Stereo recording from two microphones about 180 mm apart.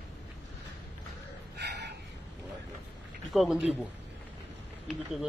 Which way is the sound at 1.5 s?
65° right (ahead or behind).